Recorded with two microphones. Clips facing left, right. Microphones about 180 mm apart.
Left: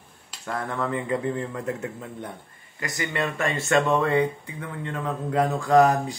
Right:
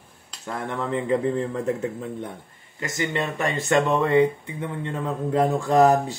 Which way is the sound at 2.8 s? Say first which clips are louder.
Right 2 dB; 25° right (ahead or behind).